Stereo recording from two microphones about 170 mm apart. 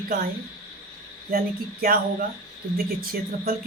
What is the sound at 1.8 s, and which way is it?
A woman's voice, 60° right (ahead or behind).